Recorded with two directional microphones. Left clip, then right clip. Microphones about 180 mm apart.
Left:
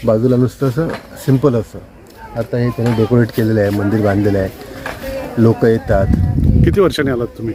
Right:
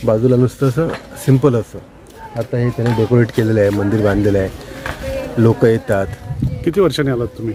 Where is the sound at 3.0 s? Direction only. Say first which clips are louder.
Even; 15° right (ahead or behind).